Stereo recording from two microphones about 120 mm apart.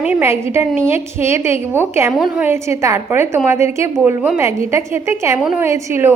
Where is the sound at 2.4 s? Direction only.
20° right (ahead or behind).